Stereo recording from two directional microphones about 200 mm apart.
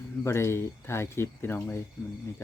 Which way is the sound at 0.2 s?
15° left (ahead or behind).